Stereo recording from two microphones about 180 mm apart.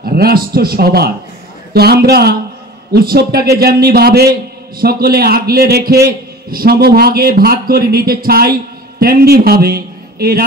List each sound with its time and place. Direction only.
0.0 s a man's voice: 55° right (ahead or behind)